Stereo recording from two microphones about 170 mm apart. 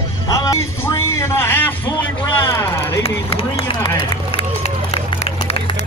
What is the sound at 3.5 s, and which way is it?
Speech, 30° left (ahead or behind).